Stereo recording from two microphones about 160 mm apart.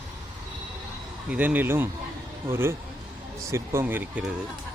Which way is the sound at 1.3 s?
10° right (ahead or behind).